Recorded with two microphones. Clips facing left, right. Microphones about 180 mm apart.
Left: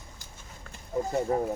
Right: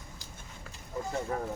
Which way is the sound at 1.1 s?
25° left (ahead or behind).